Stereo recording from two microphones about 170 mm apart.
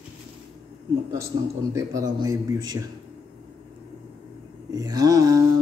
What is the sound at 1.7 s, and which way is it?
Speech, 20° right (ahead or behind).